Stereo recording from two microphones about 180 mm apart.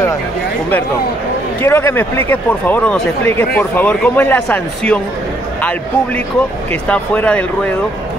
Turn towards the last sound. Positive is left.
turn(degrees=5)  # may be behind; listen again after turning